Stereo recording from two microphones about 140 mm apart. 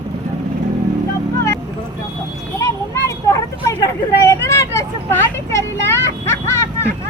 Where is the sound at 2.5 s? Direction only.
20° left (ahead or behind).